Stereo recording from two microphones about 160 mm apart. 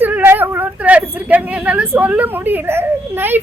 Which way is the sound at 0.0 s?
15° right (ahead or behind).